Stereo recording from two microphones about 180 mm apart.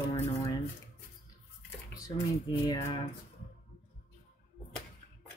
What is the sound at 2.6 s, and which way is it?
Speech, 20° left (ahead or behind).